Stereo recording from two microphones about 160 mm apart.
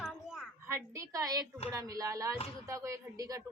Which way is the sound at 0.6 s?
15° right (ahead or behind).